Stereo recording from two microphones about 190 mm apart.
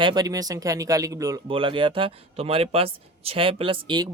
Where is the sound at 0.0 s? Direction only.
20° right (ahead or behind).